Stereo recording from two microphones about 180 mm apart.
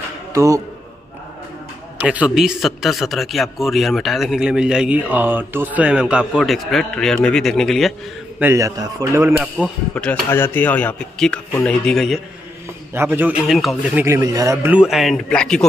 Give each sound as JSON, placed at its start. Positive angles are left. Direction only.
{"t": 0.3, "sound": "speech", "side_deg": -15}
{"t": 2.0, "sound": "a man's voice", "side_deg": -5}
{"t": 8.4, "sound": "a man's voice", "side_deg": -15}
{"t": 9.9, "sound": "a man's voice", "side_deg": 5}
{"t": 12.9, "sound": "a man's voice", "side_deg": -10}